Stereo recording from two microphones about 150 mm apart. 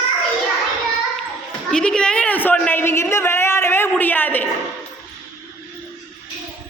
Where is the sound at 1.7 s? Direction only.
5° left (ahead or behind).